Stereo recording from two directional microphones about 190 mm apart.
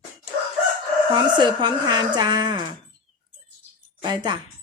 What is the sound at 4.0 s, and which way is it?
Speech, 20° right (ahead or behind).